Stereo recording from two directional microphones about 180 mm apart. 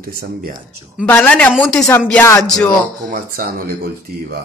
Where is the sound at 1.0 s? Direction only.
10° left (ahead or behind).